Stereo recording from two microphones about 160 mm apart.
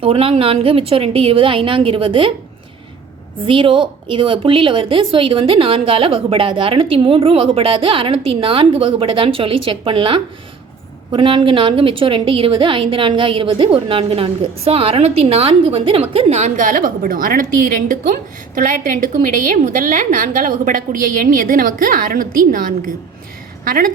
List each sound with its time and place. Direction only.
0.0 s a woman's voice: 35° right (ahead or behind)
3.4 s a woman's voice: 30° right (ahead or behind); by 23.9 s 60° right (ahead or behind)